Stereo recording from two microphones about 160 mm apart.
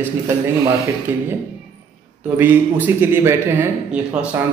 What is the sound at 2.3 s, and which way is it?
Speech, 10° right (ahead or behind).